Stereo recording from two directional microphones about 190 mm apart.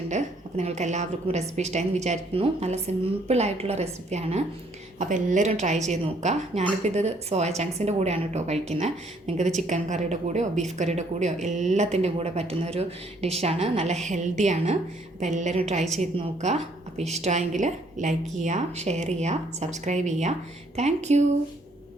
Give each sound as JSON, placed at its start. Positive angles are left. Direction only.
{"t": 0.1, "sound": "a woman's voice", "side_deg": -35}